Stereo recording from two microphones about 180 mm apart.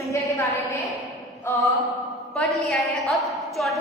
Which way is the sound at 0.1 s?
15° left (ahead or behind).